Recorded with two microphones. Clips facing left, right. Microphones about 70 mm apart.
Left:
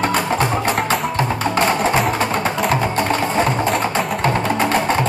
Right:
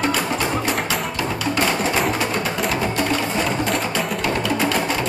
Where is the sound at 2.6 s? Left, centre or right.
Left.